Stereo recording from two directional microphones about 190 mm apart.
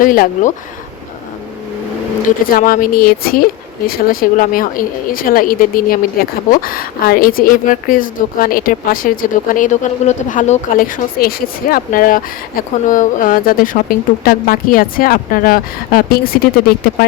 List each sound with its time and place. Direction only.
0.0 s speech: 45° left (ahead or behind)
2.2 s speech: 45° left (ahead or behind)